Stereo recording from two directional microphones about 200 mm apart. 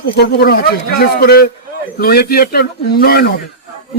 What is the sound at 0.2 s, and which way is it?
A man's voice, 50° left (ahead or behind).